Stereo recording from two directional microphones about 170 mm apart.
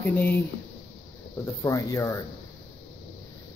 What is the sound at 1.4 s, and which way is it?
Speech, 20° left (ahead or behind).